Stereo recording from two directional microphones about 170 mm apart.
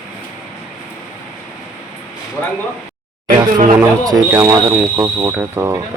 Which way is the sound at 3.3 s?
55° right (ahead or behind).